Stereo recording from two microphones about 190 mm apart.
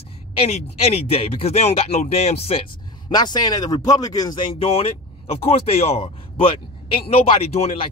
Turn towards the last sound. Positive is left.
turn(degrees=30)  # may be behind; listen again after turning